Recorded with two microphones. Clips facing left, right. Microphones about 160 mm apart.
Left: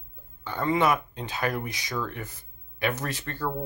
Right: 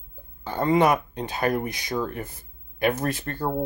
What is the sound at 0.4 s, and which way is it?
Speech, 40° right (ahead or behind).